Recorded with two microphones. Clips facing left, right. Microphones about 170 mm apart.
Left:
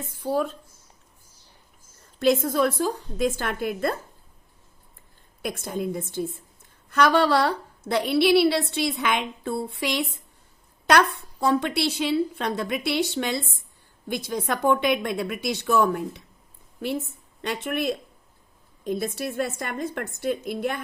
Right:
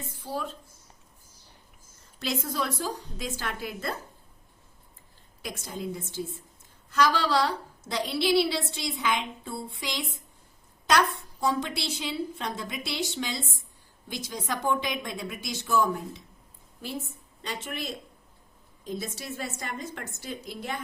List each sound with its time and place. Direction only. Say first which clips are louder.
0.0 s a woman's voice: left 9 dB; 55° left (ahead or behind)
2.1 s a woman's voice: left 10 dB; 50° left (ahead or behind)
5.4 s a woman's voice: left 7 dB; 55° left (ahead or behind)
17.4 s a woman's voice: left 9 dB; 60° left (ahead or behind)